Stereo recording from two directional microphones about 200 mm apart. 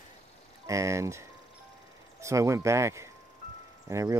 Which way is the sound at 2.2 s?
15° right (ahead or behind).